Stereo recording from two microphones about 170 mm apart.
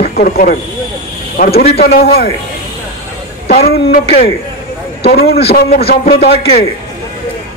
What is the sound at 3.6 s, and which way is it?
Speech, 65° left (ahead or behind).